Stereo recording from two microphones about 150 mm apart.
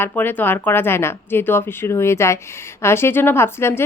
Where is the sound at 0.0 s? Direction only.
15° left (ahead or behind).